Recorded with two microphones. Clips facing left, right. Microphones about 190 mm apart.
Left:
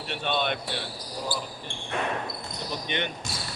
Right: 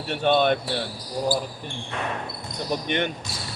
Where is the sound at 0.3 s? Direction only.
45° right (ahead or behind).